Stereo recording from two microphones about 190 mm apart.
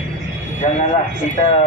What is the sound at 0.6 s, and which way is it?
Speech, 30° left (ahead or behind).